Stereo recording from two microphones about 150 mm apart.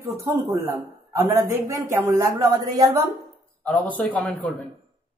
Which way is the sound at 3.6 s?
10° left (ahead or behind).